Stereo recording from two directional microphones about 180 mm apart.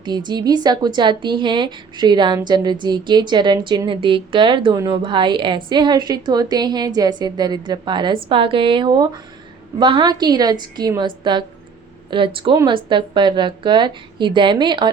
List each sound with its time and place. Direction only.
0.0 s speech: 25° right (ahead or behind)